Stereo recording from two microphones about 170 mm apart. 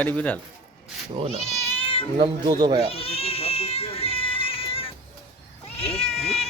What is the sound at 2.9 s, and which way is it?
Cat, 35° left (ahead or behind).